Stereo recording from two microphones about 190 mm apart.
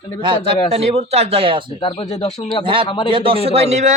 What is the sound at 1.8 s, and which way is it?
Speech, 25° left (ahead or behind).